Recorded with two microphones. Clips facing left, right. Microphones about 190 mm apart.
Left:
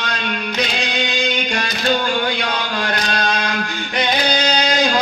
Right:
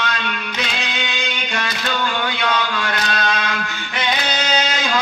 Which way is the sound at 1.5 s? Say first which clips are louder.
Left 3 dB; 35° left (ahead or behind).